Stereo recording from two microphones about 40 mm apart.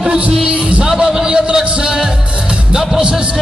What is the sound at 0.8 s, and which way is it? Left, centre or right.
Music, centre.